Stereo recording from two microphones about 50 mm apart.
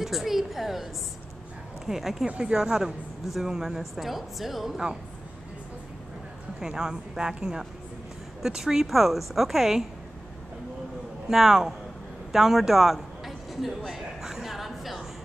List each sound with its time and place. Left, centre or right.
0.0 s speech: centre
1.9 s speech: centre
2.2 s speech: right
2.6 s speech: centre
6.6 s speech: centre
11.2 s a man's voice: centre